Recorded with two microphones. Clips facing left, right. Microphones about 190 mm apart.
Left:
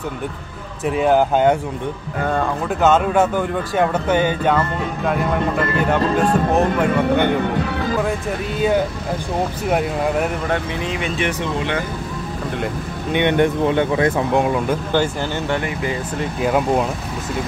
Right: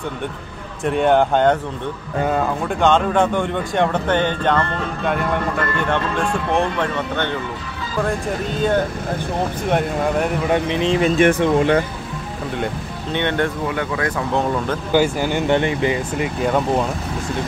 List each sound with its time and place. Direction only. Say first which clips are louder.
0.8 s a man's voice: even; 5° left (ahead or behind)
2.8 s a man's voice: left 1 dB; 5° left (ahead or behind)
6.2 s speech: left 3 dB; 40° left (ahead or behind)
6.8 s speech: left 6 dB; 10° left (ahead or behind)
7.4 s speech: left 9 dB; 65° left (ahead or behind)
8.0 s a man's voice: even; 5° left (ahead or behind)
10.5 s speech: right 5 dB; 20° right (ahead or behind)
11.0 s speech: right 10 dB; 50° right (ahead or behind)
13.1 s speech: left 4 dB; 15° left (ahead or behind)
14.4 s speech: left 2 dB; 10° left (ahead or behind)
14.9 s speech: right 2 dB; 15° right (ahead or behind)
16.2 s a man's voice: left 3 dB; centre (ahead or behind)